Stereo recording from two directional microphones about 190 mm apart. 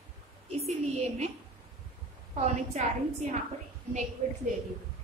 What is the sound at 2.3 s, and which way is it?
Speech, 35° right (ahead or behind).